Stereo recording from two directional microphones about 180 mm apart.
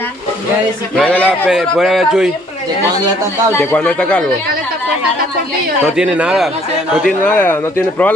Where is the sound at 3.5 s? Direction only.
10° left (ahead or behind).